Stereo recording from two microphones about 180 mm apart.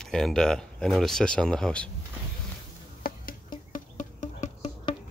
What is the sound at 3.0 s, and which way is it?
Music, 55° left (ahead or behind).